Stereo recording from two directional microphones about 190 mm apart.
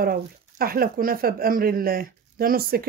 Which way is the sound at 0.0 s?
50° right (ahead or behind).